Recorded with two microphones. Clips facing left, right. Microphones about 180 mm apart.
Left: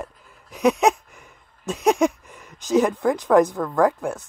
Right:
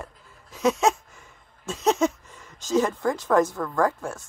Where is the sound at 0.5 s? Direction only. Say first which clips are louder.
Left 3 dB; 15° left (ahead or behind).